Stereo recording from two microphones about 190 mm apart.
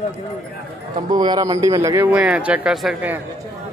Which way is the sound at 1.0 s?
20° right (ahead or behind).